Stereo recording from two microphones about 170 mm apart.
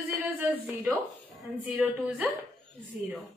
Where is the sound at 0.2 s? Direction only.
10° right (ahead or behind).